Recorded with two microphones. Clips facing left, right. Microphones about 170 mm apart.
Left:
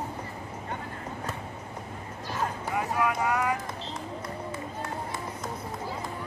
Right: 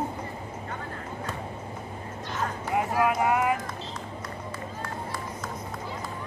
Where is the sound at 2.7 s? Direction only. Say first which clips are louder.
Right 4 dB; 25° right (ahead or behind).